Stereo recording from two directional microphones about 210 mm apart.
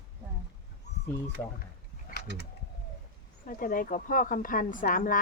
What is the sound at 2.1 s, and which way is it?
Mechanisms, 45° left (ahead or behind).